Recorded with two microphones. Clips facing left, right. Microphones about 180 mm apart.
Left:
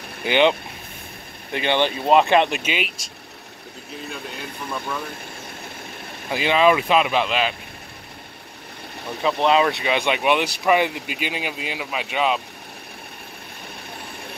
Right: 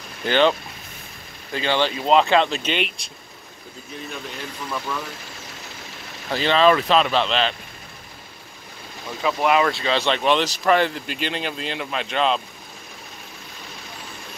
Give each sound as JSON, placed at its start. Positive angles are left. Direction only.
{"t": 0.2, "sound": "speech", "side_deg": 15}
{"t": 6.3, "sound": "speech", "side_deg": 10}
{"t": 9.2, "sound": "speech", "side_deg": 20}